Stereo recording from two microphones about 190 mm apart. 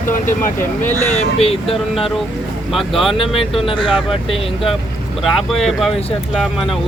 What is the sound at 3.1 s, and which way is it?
Speech, 30° left (ahead or behind).